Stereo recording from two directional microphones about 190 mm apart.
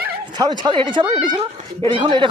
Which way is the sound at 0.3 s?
25° right (ahead or behind).